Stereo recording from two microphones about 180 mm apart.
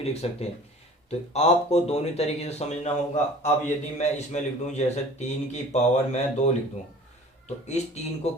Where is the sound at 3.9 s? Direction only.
40° left (ahead or behind).